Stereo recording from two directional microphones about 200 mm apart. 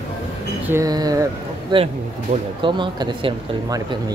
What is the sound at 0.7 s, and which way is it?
Speech, 15° right (ahead or behind).